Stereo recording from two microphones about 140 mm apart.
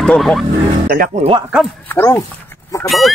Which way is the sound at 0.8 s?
90° right.